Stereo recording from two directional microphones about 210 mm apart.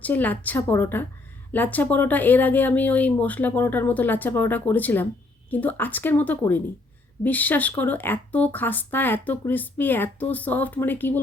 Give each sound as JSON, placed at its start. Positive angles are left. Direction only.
{"t": 0.0, "sound": "speech", "side_deg": 10}